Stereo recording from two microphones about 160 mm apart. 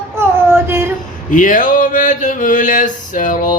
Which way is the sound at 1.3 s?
55° left (ahead or behind).